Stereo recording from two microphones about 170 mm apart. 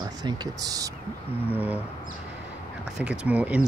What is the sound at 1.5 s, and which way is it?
Speech, 10° right (ahead or behind).